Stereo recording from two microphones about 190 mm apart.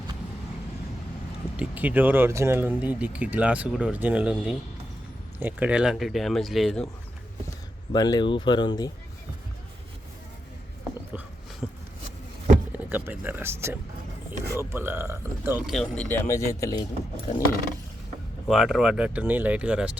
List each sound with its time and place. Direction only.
1.5 s speech: 10° right (ahead or behind)
7.9 s speech: 20° left (ahead or behind)
11.6 s a sound: 25° left (ahead or behind)
12.7 s speech: 10° right (ahead or behind)
15.7 s speech: 5° left (ahead or behind)
18.4 s speech: centre (ahead or behind)